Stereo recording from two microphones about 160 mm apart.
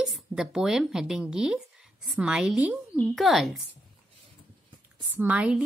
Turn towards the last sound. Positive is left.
turn(degrees=-5)  # may be behind; listen again after turning